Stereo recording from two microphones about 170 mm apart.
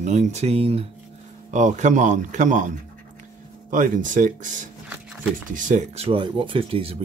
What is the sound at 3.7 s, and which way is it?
Speech, 50° right (ahead or behind).